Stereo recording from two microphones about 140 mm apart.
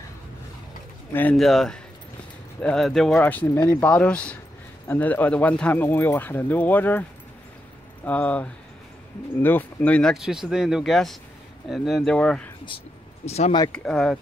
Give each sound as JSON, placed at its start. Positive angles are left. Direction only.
{"t": 1.3, "sound": "speech", "side_deg": 0}
{"t": 3.7, "sound": "speech", "side_deg": 10}
{"t": 10.1, "sound": "speech", "side_deg": -5}
{"t": 13.2, "sound": "speech", "side_deg": 50}
{"t": 13.7, "sound": "speech", "side_deg": 5}